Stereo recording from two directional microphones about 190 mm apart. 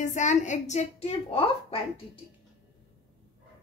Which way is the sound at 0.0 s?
40° left (ahead or behind).